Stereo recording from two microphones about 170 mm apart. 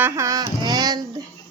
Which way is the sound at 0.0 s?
20° right (ahead or behind).